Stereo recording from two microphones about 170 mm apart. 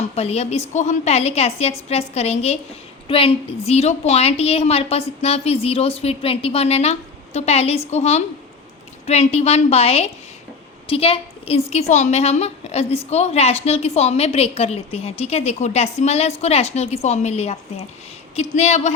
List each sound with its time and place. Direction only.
0.2 s a woman's voice: 40° left (ahead or behind)